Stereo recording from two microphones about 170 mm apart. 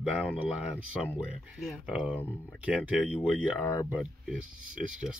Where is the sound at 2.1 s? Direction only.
10° left (ahead or behind).